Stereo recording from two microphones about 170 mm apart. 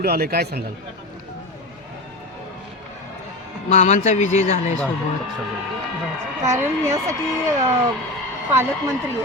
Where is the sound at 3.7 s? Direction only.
40° left (ahead or behind).